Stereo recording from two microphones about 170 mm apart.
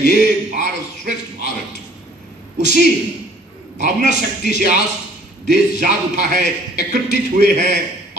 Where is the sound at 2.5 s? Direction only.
45° right (ahead or behind).